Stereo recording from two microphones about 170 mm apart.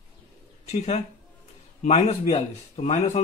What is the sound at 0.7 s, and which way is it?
A man's voice, 40° left (ahead or behind).